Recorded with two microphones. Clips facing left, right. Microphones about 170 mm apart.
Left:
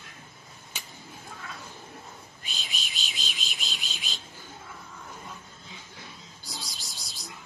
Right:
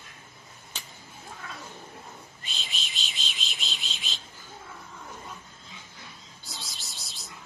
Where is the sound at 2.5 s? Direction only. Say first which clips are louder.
Even; centre (ahead or behind).